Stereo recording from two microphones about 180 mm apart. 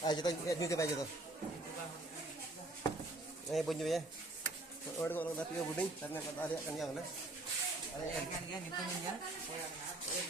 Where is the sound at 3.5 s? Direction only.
Centre (ahead or behind).